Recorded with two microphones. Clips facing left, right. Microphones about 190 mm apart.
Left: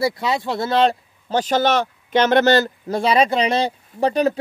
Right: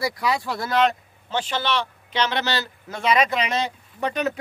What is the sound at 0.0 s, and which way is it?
A man's voice, 25° left (ahead or behind).